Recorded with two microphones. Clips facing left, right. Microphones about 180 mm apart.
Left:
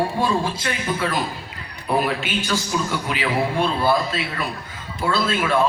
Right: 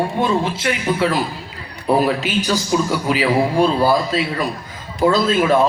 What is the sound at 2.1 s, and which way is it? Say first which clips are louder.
A man's voice: right 5 dB; 35° right (ahead or behind).